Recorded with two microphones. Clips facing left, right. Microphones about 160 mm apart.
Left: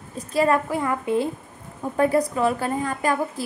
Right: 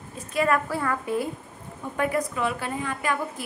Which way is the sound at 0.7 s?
20° left (ahead or behind).